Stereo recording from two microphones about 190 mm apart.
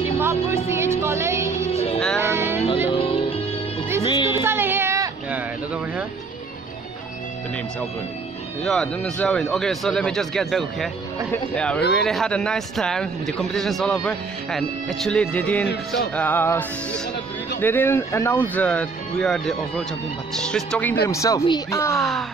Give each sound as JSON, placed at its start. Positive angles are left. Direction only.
{"t": 0.2, "sound": "music", "side_deg": -15}
{"t": 2.9, "sound": "music", "side_deg": 30}
{"t": 4.3, "sound": "a sound", "side_deg": -10}
{"t": 8.6, "sound": "speech", "side_deg": 5}
{"t": 21.0, "sound": "speech", "side_deg": 15}
{"t": 21.9, "sound": "speech", "side_deg": 0}